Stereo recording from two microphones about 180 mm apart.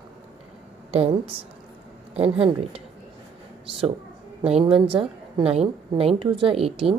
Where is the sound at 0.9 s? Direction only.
30° right (ahead or behind).